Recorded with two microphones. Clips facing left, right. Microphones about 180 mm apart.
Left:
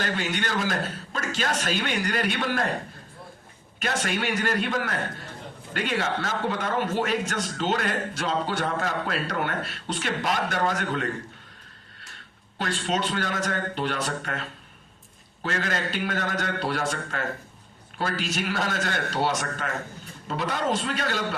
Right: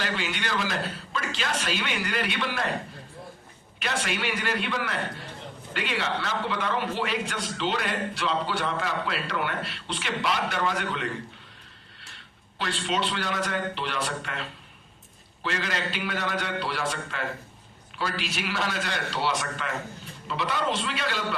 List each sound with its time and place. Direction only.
0.0 s a man's voice: 45° left (ahead or behind)
3.8 s a man's voice: 40° left (ahead or behind)
12.1 s a man's voice: 45° left (ahead or behind)